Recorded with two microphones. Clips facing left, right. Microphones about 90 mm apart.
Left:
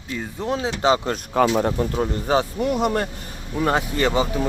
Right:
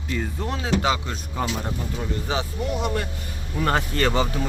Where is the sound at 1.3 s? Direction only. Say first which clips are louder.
Left 10 dB; 90° left.